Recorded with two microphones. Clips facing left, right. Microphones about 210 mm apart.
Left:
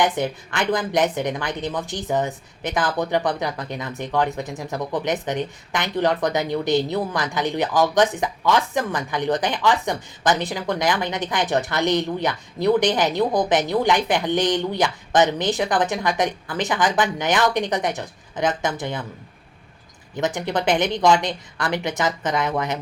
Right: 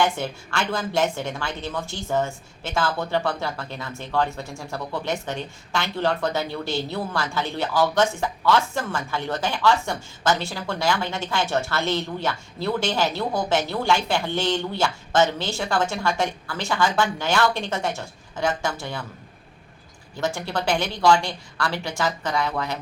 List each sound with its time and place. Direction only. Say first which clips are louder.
0.0 s a woman's voice: left 2 dB; 15° left (ahead or behind)
20.1 s a woman's voice: left 3 dB; 20° left (ahead or behind)